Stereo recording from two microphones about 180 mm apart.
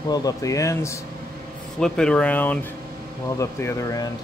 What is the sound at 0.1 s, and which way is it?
Speech, 20° left (ahead or behind).